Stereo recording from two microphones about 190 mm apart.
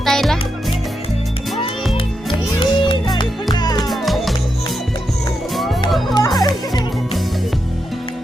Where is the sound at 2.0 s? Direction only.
25° left (ahead or behind).